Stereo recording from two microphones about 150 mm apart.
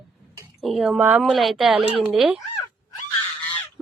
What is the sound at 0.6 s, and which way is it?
Speech, centre (ahead or behind).